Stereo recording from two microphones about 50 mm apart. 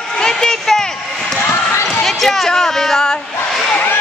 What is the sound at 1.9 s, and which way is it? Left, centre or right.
Speech, centre.